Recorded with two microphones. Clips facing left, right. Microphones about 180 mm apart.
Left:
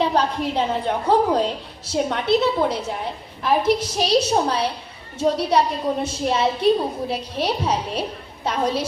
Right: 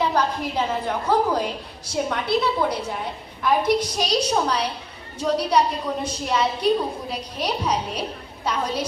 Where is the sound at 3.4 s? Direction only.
30° left (ahead or behind).